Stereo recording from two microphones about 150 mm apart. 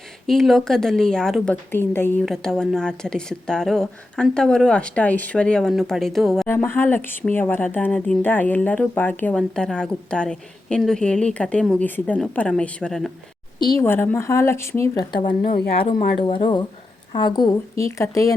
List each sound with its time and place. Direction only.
0.3 s speech: centre (ahead or behind)
2.2 s speech: centre (ahead or behind)
6.5 s speech: 15° left (ahead or behind)
13.7 s speech: 15° left (ahead or behind); by 15.4 s 30° left (ahead or behind)
15.4 s speech: 90° left
16.1 s a woman's voice: 35° left (ahead or behind)